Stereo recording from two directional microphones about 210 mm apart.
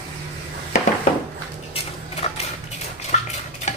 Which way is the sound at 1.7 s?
30° left (ahead or behind).